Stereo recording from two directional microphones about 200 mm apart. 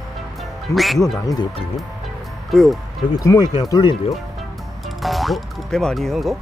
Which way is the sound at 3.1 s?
20° left (ahead or behind).